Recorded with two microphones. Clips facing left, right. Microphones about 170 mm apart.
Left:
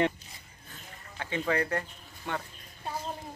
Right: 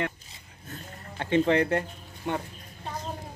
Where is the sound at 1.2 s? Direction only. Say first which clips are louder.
Right 7 dB; 25° right (ahead or behind).